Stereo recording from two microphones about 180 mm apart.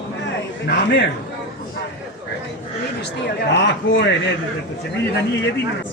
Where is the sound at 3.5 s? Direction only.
75° left (ahead or behind).